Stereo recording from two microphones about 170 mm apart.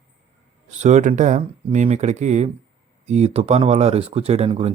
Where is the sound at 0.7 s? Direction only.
45° right (ahead or behind).